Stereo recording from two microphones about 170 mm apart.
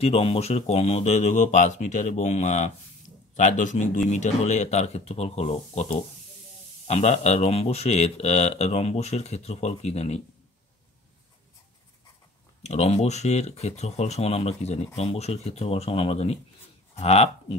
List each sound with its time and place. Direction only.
0.0 s speech: 35° left (ahead or behind)
12.6 s speech: 40° left (ahead or behind)